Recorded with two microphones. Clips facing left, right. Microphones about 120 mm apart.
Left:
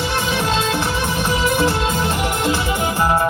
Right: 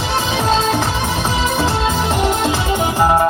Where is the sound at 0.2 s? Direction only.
90° right.